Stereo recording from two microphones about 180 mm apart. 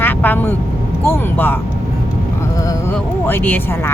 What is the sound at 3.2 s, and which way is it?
Speech, 10° left (ahead or behind).